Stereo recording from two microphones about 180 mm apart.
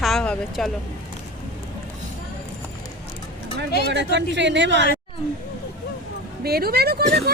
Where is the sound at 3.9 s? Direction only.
75° right (ahead or behind).